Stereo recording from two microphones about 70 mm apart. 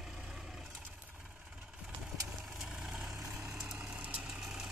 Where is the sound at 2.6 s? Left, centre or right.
Centre.